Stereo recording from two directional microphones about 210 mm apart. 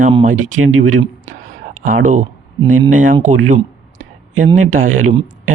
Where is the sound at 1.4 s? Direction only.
40° right (ahead or behind).